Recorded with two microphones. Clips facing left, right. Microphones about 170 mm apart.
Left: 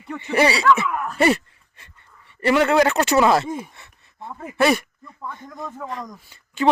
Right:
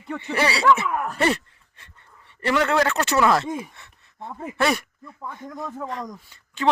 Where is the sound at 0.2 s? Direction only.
15° left (ahead or behind).